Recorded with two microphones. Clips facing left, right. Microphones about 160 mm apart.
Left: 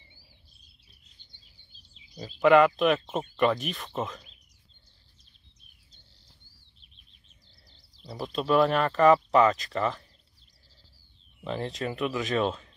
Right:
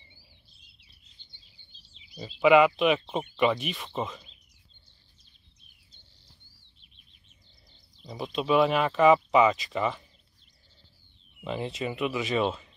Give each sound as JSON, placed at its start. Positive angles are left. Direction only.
{"t": 1.3, "sound": "speech", "side_deg": 0}
{"t": 7.7, "sound": "speech", "side_deg": 5}
{"t": 11.4, "sound": "speech", "side_deg": 0}